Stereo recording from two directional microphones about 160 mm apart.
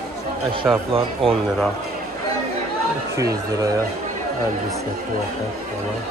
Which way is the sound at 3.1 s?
20° right (ahead or behind).